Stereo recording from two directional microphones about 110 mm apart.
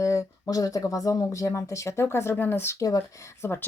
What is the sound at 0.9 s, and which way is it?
A woman's voice, 30° left (ahead or behind).